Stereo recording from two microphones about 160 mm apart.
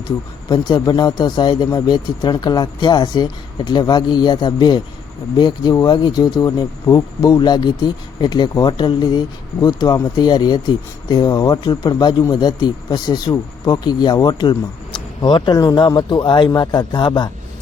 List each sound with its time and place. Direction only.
0.4 s speech: 25° left (ahead or behind)